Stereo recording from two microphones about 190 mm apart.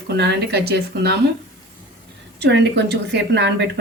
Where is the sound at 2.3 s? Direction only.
65° right (ahead or behind).